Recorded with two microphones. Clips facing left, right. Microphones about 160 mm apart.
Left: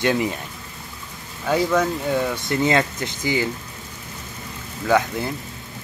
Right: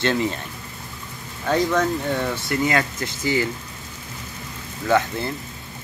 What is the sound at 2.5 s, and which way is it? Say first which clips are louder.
Speech: left 3 dB; 25° left (ahead or behind).